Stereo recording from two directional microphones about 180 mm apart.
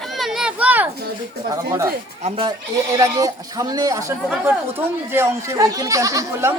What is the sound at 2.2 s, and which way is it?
Speech, 30° right (ahead or behind).